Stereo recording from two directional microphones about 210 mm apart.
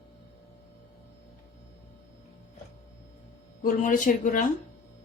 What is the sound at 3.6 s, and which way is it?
Speech, 40° left (ahead or behind).